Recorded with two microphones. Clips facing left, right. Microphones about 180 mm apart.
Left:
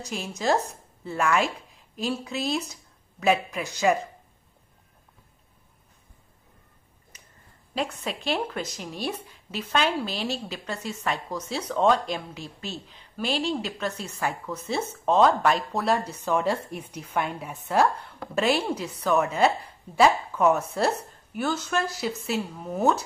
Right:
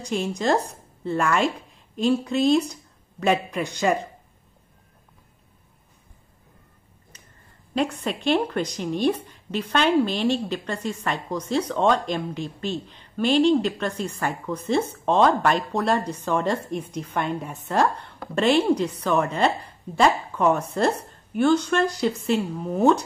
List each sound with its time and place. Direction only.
0.0 s speech: 5° left (ahead or behind)
7.7 s a woman's voice: centre (ahead or behind)